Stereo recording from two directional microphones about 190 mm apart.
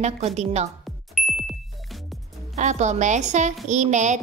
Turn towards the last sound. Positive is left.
turn(degrees=-40)  # may be behind; listen again after turning